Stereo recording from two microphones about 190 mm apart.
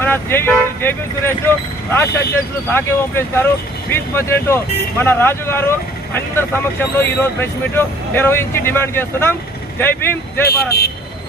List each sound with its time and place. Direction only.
0.0 s speech: 10° left (ahead or behind)
10.5 s speech: 55° left (ahead or behind)